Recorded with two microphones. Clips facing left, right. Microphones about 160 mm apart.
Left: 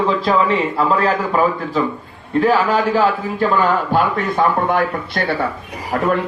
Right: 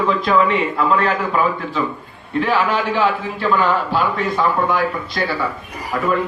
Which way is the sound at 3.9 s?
50° left (ahead or behind).